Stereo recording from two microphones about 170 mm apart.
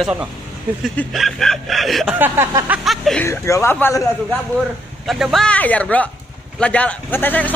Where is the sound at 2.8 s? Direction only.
Centre (ahead or behind).